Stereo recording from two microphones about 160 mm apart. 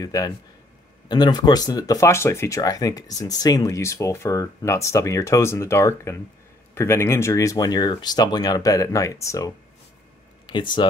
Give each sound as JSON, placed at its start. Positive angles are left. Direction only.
{"t": 0.0, "sound": "speech", "side_deg": 20}